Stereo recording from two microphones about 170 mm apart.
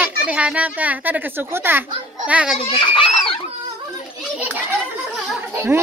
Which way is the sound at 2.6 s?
30° left (ahead or behind).